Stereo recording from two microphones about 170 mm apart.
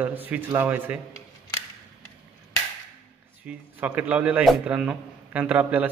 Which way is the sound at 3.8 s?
10° right (ahead or behind).